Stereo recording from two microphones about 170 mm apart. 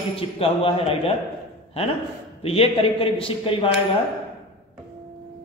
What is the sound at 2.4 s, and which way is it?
A man's voice, 35° left (ahead or behind).